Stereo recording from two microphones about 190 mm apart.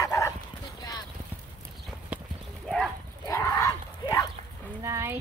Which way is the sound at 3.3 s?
15° left (ahead or behind).